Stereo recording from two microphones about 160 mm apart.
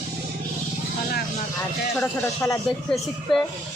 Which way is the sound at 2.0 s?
15° left (ahead or behind).